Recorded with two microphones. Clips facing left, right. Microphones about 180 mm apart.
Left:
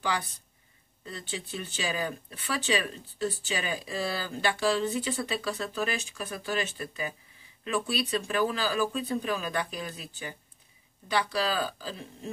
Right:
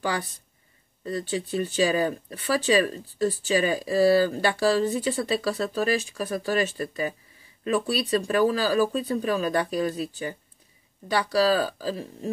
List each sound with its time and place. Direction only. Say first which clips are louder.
0.0 s speech: right 3 dB; 45° right (ahead or behind)